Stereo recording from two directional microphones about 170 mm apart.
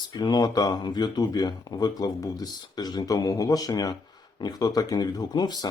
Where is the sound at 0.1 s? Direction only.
25° left (ahead or behind).